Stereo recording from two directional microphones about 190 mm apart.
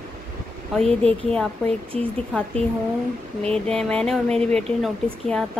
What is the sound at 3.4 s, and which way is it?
Speech, 5° left (ahead or behind).